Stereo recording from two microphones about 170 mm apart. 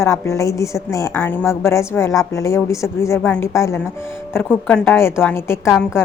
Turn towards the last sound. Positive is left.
turn(degrees=15)  # may be behind; listen again after turning